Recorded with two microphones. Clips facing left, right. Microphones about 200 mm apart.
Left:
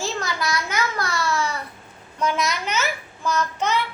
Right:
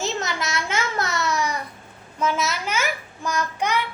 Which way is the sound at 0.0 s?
20° right (ahead or behind).